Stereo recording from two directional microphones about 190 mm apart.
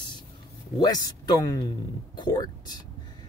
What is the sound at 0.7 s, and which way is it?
Speech, 20° left (ahead or behind).